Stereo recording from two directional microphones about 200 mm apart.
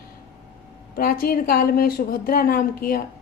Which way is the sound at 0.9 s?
45° left (ahead or behind).